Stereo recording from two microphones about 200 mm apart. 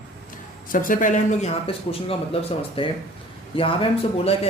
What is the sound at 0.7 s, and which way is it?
A man's voice, 45° left (ahead or behind).